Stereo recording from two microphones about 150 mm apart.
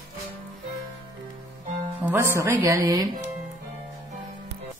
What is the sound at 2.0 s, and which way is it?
Speech, 15° right (ahead or behind).